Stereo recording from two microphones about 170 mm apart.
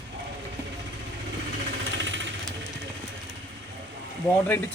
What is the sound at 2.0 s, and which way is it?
Jackhammer, 90° right.